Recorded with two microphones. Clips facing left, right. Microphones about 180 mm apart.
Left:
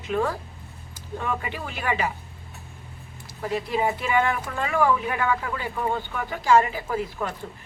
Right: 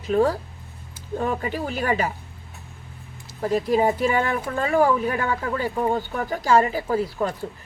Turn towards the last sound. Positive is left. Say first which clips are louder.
# right 5 dB
turn(degrees=-35)  # may be behind; listen again after turning